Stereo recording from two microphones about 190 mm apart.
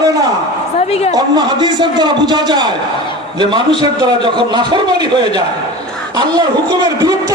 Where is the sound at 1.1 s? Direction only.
20° right (ahead or behind).